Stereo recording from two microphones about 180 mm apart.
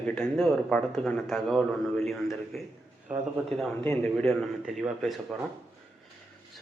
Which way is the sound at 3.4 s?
5° left (ahead or behind).